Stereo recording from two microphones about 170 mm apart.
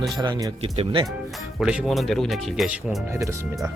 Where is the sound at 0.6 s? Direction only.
30° right (ahead or behind).